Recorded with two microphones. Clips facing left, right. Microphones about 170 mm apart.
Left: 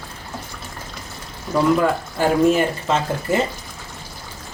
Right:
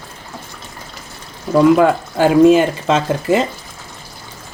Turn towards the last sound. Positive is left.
turn(degrees=-90)